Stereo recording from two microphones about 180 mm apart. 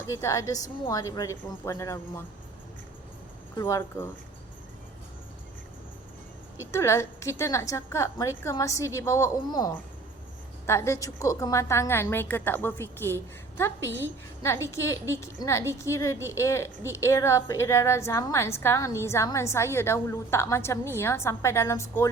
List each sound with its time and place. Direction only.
0.0 s a woman's voice: 15° left (ahead or behind)
3.6 s a woman's voice: 10° left (ahead or behind)
6.7 s a woman's voice: 15° left (ahead or behind)